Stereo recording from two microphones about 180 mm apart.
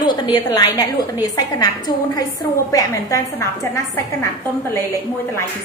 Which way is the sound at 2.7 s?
20° left (ahead or behind).